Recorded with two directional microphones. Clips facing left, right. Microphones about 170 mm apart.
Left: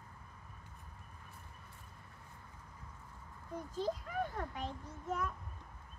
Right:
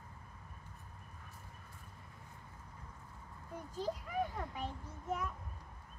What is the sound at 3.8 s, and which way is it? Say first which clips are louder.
A child's voice: even; 10° right (ahead or behind).